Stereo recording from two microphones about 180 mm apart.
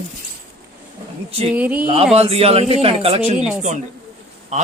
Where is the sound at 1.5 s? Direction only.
10° right (ahead or behind).